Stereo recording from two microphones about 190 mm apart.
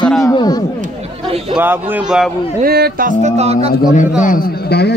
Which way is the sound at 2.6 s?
55° right (ahead or behind).